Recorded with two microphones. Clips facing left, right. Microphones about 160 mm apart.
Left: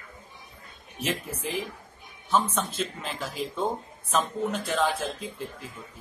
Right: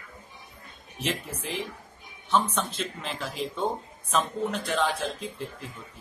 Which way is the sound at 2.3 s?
Centre (ahead or behind).